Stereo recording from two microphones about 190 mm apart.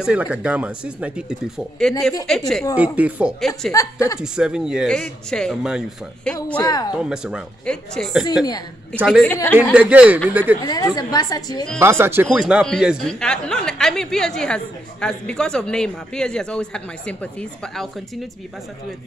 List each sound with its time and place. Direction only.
0.0 s a woman's voice: 5° right (ahead or behind)
3.7 s a woman's voice: 15° left (ahead or behind)
4.2 s speech: 5° right (ahead or behind)
6.6 s a woman's voice: 20° left (ahead or behind)
6.9 s speech: 5° right (ahead or behind)
9.8 s a woman's voice: 5° right (ahead or behind)
10.6 s a woman's voice: 20° left (ahead or behind)
11.8 s speech: 10° right (ahead or behind); by 17.8 s 5° left (ahead or behind)